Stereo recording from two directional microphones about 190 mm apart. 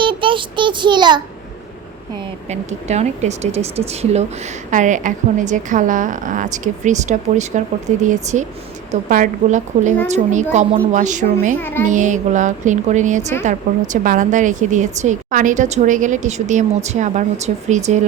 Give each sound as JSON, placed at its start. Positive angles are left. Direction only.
{"t": 0.0, "sound": "a child's voice", "side_deg": -25}
{"t": 2.5, "sound": "speech", "side_deg": -35}
{"t": 11.5, "sound": "speech", "side_deg": 10}
{"t": 11.9, "sound": "speech", "side_deg": -40}